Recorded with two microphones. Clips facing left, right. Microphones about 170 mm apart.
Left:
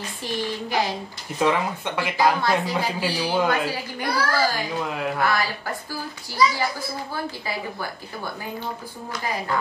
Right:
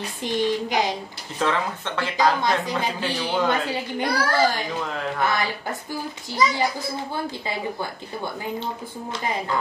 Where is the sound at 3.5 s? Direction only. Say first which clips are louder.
Even; 20° right (ahead or behind).